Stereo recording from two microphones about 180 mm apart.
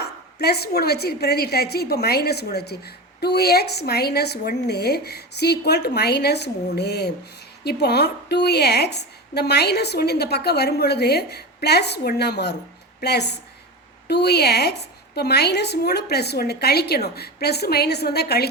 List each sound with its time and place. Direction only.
0.0 s a woman's voice: 65° left (ahead or behind)